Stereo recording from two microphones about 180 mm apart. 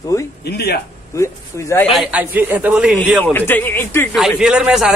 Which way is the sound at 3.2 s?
10° left (ahead or behind).